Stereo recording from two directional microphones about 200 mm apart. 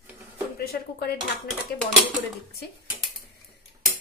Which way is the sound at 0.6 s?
50° left (ahead or behind).